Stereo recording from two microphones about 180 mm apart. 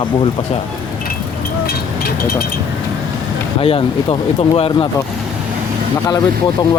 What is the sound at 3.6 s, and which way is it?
Speech, 30° left (ahead or behind).